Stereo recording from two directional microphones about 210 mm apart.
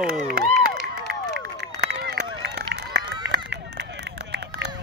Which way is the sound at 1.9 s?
55° right (ahead or behind).